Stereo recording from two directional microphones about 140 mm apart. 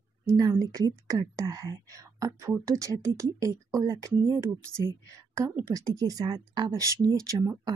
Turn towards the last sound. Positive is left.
turn(degrees=-25)  # may be behind; listen again after turning